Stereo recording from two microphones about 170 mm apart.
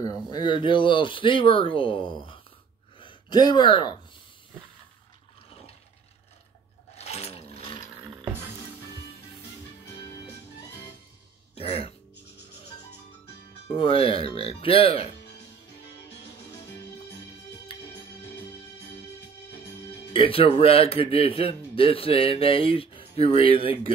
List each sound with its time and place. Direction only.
0.3 s speech: 25° left (ahead or behind)
3.0 s a sound: 30° left (ahead or behind)
7.0 s a sound: 40° left (ahead or behind)
11.5 s speech: 35° left (ahead or behind)
13.7 s speech: 35° left (ahead or behind)
17.7 s music: 30° left (ahead or behind)
20.1 s speech: 30° left (ahead or behind)